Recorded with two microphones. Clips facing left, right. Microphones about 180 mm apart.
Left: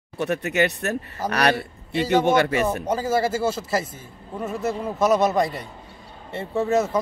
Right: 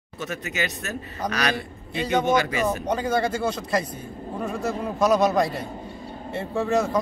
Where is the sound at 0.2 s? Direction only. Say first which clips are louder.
Left 7 dB; 65° left (ahead or behind).